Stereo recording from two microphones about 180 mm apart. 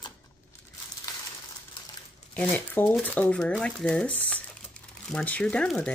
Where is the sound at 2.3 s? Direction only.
10° left (ahead or behind).